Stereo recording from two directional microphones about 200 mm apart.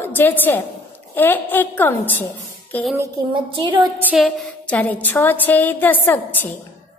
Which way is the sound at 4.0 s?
10° right (ahead or behind).